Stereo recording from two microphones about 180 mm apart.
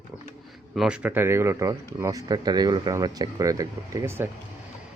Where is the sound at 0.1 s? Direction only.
Centre (ahead or behind).